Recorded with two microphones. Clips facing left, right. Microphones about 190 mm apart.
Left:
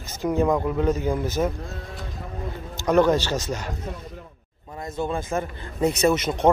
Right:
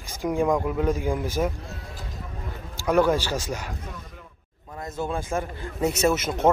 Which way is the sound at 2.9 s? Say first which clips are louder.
Left 2 dB; 10° right (ahead or behind).